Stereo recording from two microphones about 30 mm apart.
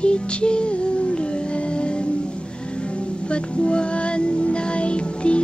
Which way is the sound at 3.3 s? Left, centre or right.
Left.